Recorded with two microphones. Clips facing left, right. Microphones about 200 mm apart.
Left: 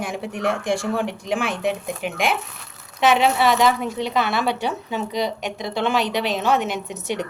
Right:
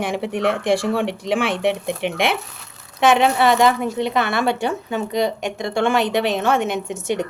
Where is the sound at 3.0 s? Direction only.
55° right (ahead or behind).